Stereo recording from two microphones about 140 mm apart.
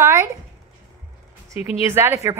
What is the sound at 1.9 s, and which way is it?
Speech, 15° right (ahead or behind).